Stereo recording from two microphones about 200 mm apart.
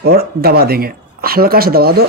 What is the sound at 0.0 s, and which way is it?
Speech, 50° right (ahead or behind).